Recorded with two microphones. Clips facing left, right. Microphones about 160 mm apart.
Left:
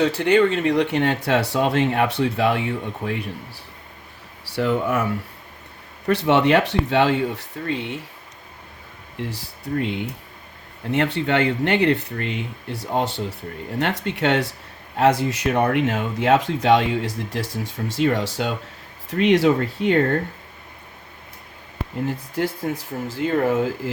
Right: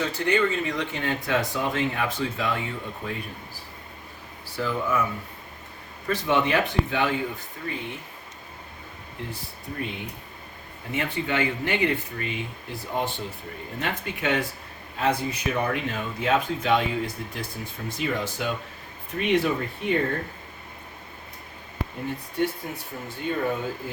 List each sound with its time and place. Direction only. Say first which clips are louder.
0.0 s speech: left 7 dB; 70° left (ahead or behind)
6.1 s speech: left 6 dB; 70° left (ahead or behind)
9.1 s speech: left 6 dB; 80° left
10.9 s speech: left 7 dB; 70° left (ahead or behind)
22.0 s speech: left 3 dB; 90° left